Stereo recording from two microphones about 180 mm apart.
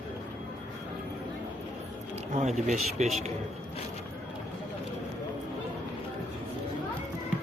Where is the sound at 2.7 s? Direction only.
40° right (ahead or behind).